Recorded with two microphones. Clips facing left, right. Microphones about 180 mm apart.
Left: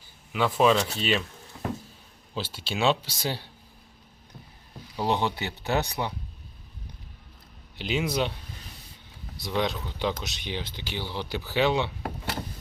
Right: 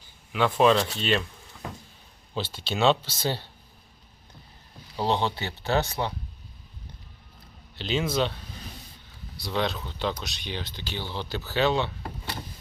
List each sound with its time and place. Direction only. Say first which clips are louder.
0.3 s speech: right 1 dB; 5° left (ahead or behind)
2.3 s speech: right 2 dB; 5° left (ahead or behind)
4.9 s speech: even; 15° left (ahead or behind)
7.8 s speech: right 1 dB; 10° left (ahead or behind)
9.4 s speech: even; 15° left (ahead or behind)